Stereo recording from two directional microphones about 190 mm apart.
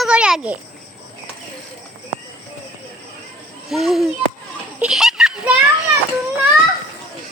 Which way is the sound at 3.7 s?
Centre (ahead or behind).